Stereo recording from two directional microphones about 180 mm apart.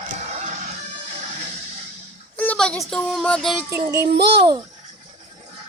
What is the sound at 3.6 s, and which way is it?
Speech, 10° right (ahead or behind).